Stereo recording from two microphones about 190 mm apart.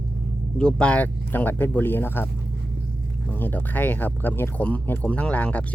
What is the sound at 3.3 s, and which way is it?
Speech, 10° left (ahead or behind).